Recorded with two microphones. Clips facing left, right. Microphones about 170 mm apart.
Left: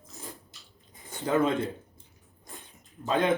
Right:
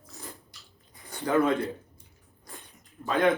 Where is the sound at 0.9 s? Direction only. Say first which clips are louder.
Right 2 dB; 20° left (ahead or behind).